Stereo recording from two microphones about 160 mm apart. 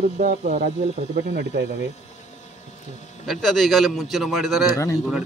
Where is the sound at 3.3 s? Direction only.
5° left (ahead or behind).